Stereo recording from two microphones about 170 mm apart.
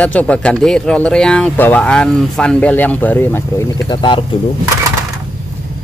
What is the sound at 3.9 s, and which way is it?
Speech, 30° left (ahead or behind).